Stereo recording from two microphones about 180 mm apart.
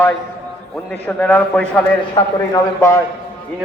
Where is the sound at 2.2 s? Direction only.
30° left (ahead or behind).